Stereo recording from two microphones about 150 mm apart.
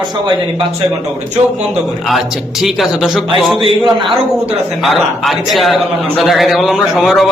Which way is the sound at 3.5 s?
35° right (ahead or behind).